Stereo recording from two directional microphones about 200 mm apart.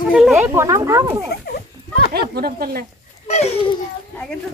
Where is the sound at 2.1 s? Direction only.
50° right (ahead or behind).